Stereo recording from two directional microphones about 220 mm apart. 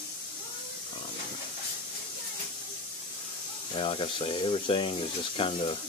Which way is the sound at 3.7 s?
25° left (ahead or behind).